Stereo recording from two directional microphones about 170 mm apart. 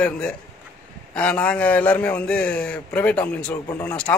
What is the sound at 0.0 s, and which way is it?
A man's voice, 5° left (ahead or behind).